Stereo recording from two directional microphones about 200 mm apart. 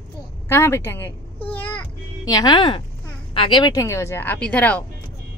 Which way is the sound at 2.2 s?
20° left (ahead or behind).